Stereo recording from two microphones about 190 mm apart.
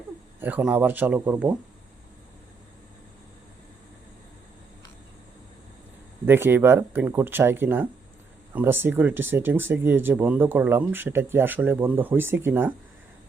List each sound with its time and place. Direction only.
0.3 s speech: 10° right (ahead or behind)
6.2 s speech: 10° right (ahead or behind)